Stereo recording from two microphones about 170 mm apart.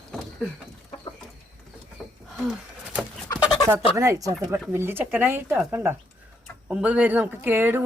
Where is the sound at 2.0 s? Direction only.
Centre (ahead or behind).